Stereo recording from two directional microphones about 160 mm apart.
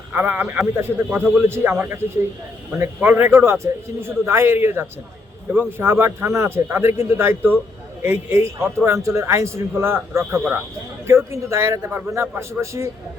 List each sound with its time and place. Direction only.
0.1 s a man's voice: 10° right (ahead or behind)